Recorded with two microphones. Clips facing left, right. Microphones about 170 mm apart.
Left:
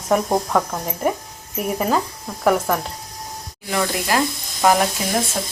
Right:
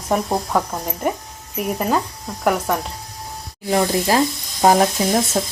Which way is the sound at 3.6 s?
30° right (ahead or behind).